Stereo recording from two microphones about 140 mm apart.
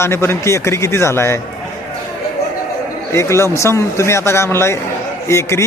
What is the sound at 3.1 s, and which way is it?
Speech, 20° left (ahead or behind).